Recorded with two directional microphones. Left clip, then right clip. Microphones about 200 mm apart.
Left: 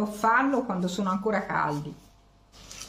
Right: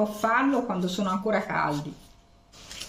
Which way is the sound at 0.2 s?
20° left (ahead or behind).